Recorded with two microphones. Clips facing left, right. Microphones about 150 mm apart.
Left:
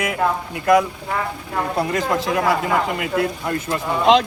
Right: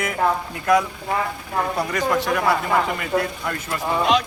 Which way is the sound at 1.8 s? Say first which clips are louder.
Left 2 dB; 25° left (ahead or behind).